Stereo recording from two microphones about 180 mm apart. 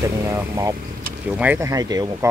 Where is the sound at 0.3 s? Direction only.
20° right (ahead or behind).